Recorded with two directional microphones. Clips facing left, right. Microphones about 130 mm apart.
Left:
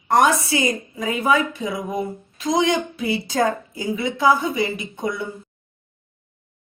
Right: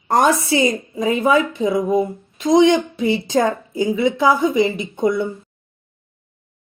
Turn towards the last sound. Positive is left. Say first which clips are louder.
# right 8 dB
turn(degrees=-25)  # may be behind; listen again after turning